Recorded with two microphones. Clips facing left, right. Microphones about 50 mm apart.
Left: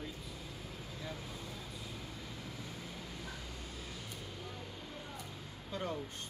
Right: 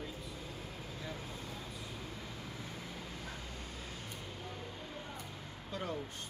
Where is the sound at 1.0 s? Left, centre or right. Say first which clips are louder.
Even; right.